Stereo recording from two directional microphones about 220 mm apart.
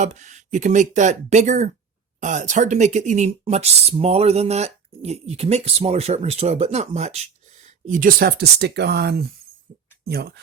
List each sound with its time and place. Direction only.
0.0 s speech: 35° right (ahead or behind)